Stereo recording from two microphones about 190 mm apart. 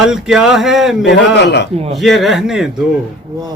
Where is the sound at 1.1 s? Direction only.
60° left (ahead or behind).